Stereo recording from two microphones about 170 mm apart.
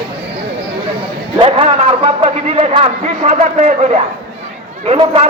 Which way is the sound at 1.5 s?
35° right (ahead or behind).